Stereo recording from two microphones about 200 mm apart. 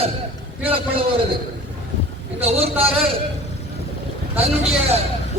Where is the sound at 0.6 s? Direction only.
30° right (ahead or behind).